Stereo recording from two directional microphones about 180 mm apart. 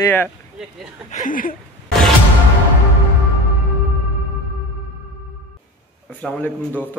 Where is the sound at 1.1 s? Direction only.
50° left (ahead or behind).